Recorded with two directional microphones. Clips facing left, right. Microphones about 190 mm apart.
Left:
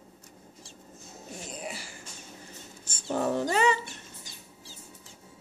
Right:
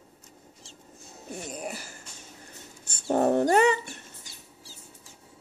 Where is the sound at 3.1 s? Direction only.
55° right (ahead or behind).